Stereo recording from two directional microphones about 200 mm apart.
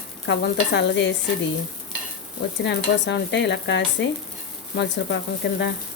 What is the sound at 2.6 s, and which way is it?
Stir, 60° left (ahead or behind).